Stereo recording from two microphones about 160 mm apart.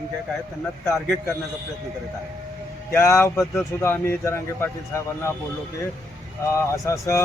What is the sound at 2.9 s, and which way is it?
A man's voice, 15° left (ahead or behind).